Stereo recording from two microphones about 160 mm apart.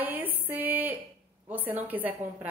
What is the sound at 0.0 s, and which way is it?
Music, 10° right (ahead or behind).